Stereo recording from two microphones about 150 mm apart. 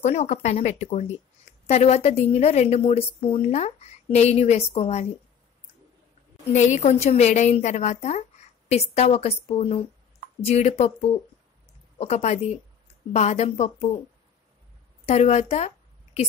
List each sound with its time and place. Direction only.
0.0 s a woman's voice: 50° left (ahead or behind)
6.5 s a woman's voice: 50° left (ahead or behind)
15.0 s a woman's voice: 45° left (ahead or behind)